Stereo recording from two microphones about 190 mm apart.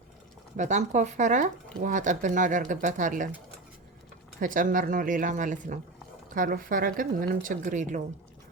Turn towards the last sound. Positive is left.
turn(degrees=-40)  # may be behind; listen again after turning